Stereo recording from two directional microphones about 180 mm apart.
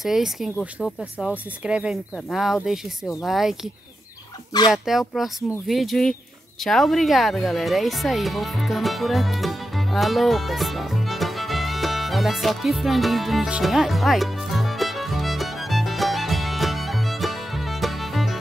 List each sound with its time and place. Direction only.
0.0 s speech: centre (ahead or behind)
4.5 s speech: 20° left (ahead or behind)
4.8 s speech: centre (ahead or behind)
6.6 s music: centre (ahead or behind)